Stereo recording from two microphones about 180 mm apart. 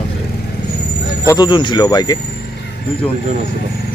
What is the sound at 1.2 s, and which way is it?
Speech, 20° left (ahead or behind).